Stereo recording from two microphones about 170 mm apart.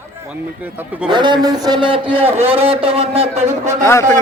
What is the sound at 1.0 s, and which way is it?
A man's voice, 25° right (ahead or behind).